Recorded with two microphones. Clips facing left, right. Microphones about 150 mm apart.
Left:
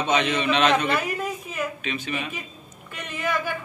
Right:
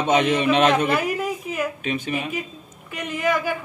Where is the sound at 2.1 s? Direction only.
10° right (ahead or behind).